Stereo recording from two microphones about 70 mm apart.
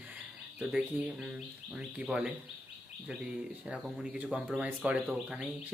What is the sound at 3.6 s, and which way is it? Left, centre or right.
Speech, centre.